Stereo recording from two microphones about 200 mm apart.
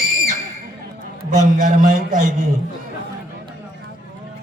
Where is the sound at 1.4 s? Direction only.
40° right (ahead or behind).